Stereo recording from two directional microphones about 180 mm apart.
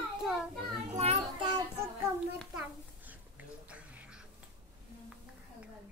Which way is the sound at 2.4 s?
5° right (ahead or behind).